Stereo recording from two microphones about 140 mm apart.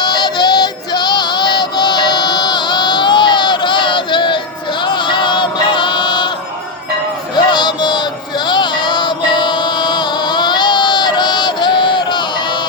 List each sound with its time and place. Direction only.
0.0 s female singing: 30° left (ahead or behind)
4.9 s chant: 35° left (ahead or behind)
7.3 s a sound: 30° left (ahead or behind)
8.4 s music: 35° left (ahead or behind)